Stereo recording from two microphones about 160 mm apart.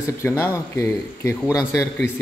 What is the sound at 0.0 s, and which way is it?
Speech, 15° left (ahead or behind).